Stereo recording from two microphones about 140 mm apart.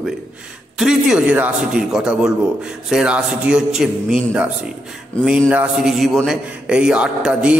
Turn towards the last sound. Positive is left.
turn(degrees=-10)  # may be behind; listen again after turning